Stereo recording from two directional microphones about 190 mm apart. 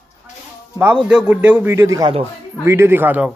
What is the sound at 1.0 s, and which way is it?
A man's voice, 5° right (ahead or behind).